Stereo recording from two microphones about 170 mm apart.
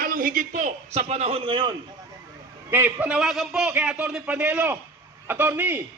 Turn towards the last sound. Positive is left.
turn(degrees=-10)  # may be behind; listen again after turning